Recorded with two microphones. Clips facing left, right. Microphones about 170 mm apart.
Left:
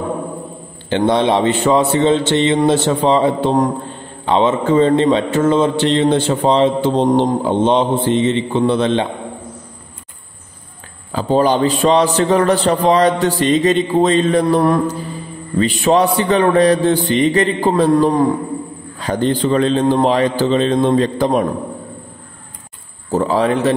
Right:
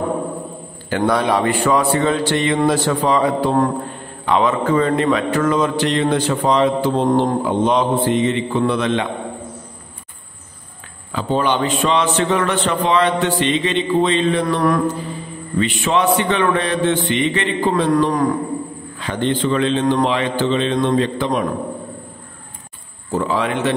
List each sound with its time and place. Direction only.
0.8 s speech: 25° left (ahead or behind)
11.1 s a man's voice: 35° left (ahead or behind)
23.1 s a man's voice: 35° left (ahead or behind)